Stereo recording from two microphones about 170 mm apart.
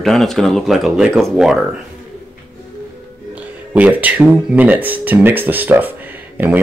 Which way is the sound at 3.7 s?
10° right (ahead or behind).